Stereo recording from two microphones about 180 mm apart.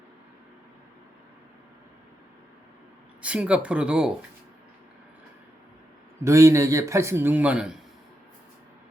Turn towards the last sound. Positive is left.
turn(degrees=-5)  # may be behind; listen again after turning